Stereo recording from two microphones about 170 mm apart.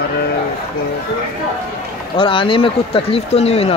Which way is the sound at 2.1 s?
30° left (ahead or behind).